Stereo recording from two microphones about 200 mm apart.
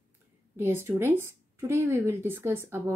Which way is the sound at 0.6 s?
10° right (ahead or behind).